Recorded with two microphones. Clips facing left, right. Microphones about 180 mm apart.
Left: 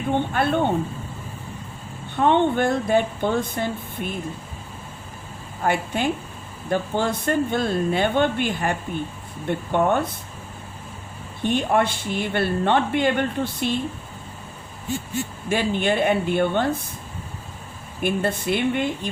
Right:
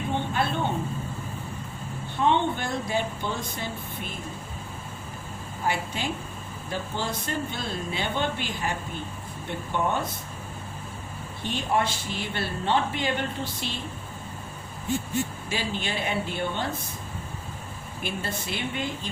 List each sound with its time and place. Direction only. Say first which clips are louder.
0.1 s a woman's voice: left 7 dB; 55° left (ahead or behind)
2.1 s speech: left 6 dB; 55° left (ahead or behind)
5.6 s a woman's voice: left 6 dB; 55° left (ahead or behind)
11.4 s speech: left 6 dB; 60° left (ahead or behind)
15.4 s speech: left 9 dB; 55° left (ahead or behind)
18.0 s speech: left 10 dB; 55° left (ahead or behind)